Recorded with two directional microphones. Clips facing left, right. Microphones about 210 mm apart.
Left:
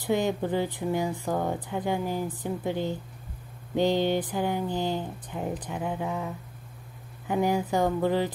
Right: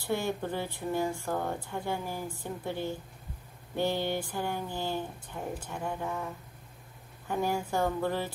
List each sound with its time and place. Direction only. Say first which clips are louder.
0.0 s speech: left 5 dB; 20° left (ahead or behind)
7.2 s speech: left 5 dB; 15° left (ahead or behind)